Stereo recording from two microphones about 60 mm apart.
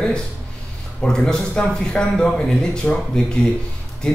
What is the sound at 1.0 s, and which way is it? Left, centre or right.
Speech, centre.